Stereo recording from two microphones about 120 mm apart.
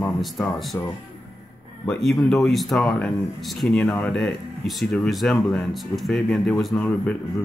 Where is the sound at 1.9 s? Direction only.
5° left (ahead or behind).